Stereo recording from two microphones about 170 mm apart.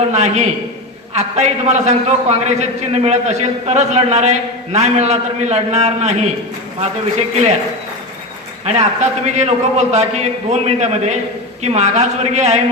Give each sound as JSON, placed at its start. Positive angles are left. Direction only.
{"t": 0.1, "sound": "a man's voice", "side_deg": -45}
{"t": 8.6, "sound": "a man's voice", "side_deg": -40}